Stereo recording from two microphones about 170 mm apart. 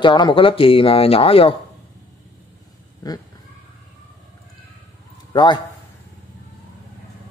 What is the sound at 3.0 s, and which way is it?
Speech, 25° left (ahead or behind).